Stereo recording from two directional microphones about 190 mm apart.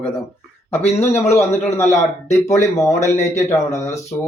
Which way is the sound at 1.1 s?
35° left (ahead or behind).